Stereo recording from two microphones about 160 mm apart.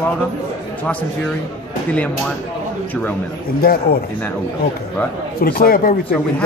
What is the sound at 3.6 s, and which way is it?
Speech, 65° left (ahead or behind).